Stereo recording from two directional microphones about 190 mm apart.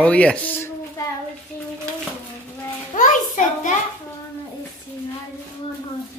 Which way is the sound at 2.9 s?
40° left (ahead or behind).